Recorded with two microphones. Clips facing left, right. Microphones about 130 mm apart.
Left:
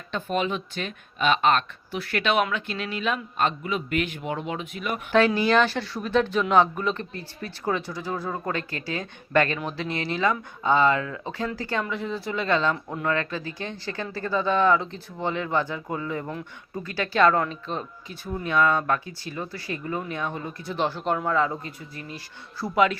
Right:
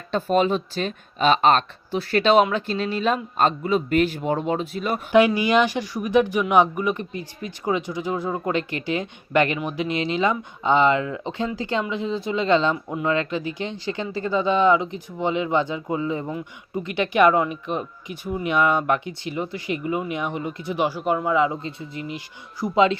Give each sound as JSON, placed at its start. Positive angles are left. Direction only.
{"t": 0.1, "sound": "speech", "side_deg": -35}
{"t": 5.1, "sound": "speech", "side_deg": -15}
{"t": 12.7, "sound": "speech", "side_deg": -5}
{"t": 13.1, "sound": "speech", "side_deg": -20}
{"t": 16.2, "sound": "speech", "side_deg": -10}
{"t": 16.8, "sound": "speech", "side_deg": -20}